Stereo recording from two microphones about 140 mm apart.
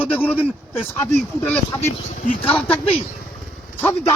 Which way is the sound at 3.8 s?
20° left (ahead or behind).